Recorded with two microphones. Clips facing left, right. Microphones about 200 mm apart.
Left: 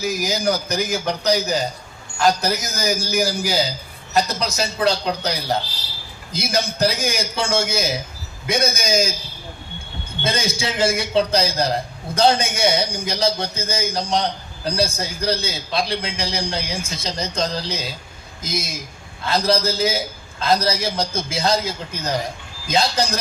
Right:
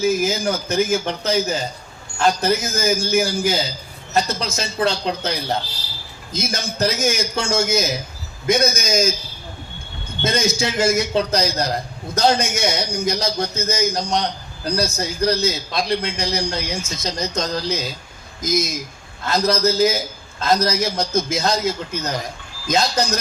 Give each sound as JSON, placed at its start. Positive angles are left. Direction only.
{"t": 0.0, "sound": "a man's voice", "side_deg": 40}
{"t": 6.3, "sound": "a man's voice", "side_deg": 35}
{"t": 10.2, "sound": "a man's voice", "side_deg": 30}